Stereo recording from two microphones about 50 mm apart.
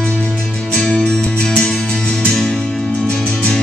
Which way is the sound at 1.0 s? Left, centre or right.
Centre.